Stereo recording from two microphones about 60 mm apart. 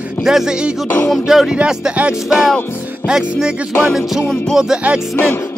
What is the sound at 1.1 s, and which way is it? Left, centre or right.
Speech, centre.